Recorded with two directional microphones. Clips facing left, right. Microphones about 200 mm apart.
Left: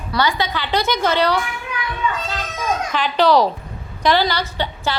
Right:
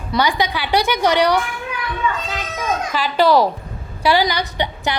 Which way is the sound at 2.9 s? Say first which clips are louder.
Right 1 dB; 5° right (ahead or behind).